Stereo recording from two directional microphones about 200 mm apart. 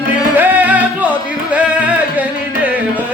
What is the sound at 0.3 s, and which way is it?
Music, 10° right (ahead or behind).